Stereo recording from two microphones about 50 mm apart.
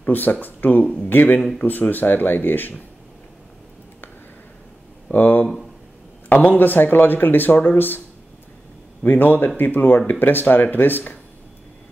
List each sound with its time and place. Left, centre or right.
0.0 s speech: left
5.1 s speech: left
9.0 s speech: left